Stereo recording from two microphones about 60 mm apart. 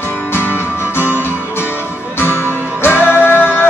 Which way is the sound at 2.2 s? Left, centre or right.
Left.